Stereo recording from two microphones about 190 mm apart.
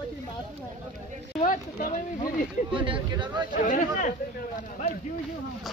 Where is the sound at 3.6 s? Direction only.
45° left (ahead or behind).